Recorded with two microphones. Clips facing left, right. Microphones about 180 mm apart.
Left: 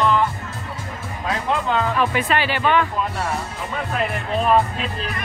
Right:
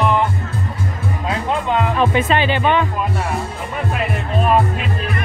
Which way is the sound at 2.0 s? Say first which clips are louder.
Right 4 dB; 25° right (ahead or behind).